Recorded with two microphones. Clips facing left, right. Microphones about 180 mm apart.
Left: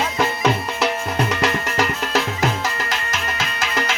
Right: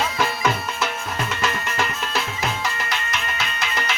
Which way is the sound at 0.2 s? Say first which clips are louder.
Left 6 dB; 35° left (ahead or behind).